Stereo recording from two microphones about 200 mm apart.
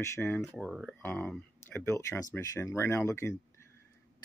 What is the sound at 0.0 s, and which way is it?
Speech, 15° left (ahead or behind).